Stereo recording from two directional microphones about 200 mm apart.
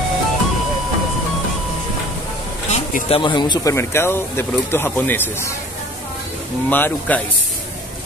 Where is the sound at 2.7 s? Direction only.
30° left (ahead or behind); by 5.5 s 10° left (ahead or behind).